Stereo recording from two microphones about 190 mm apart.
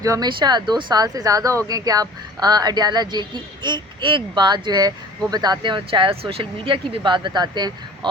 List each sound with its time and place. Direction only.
0.0 s speech: 20° right (ahead or behind)